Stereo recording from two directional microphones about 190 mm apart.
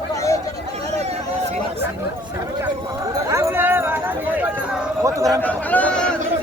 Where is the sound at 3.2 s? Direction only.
15° right (ahead or behind).